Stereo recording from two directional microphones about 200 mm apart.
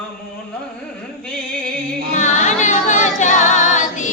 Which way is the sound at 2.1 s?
35° left (ahead or behind).